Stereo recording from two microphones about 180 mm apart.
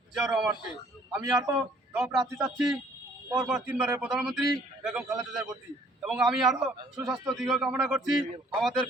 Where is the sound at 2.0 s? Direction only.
15° right (ahead or behind).